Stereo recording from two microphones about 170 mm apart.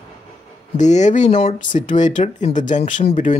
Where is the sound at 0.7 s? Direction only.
45° left (ahead or behind).